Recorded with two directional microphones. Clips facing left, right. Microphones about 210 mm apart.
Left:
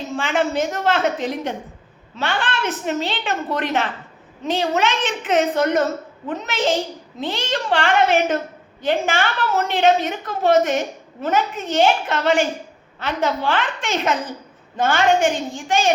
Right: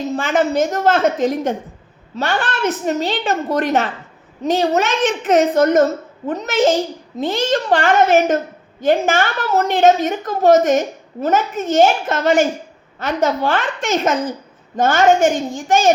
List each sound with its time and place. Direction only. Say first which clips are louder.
0.1 s a woman's voice: right 3 dB; 40° right (ahead or behind)